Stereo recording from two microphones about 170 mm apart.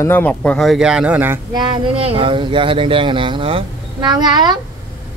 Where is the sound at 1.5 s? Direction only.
30° right (ahead or behind).